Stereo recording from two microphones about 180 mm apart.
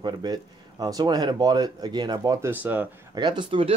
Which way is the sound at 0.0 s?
20° right (ahead or behind).